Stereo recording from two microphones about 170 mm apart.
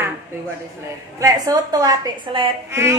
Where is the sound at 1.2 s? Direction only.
20° right (ahead or behind).